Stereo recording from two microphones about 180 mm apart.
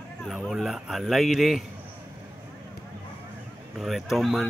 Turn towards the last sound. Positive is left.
turn(degrees=0)  # may be behind; listen again after turning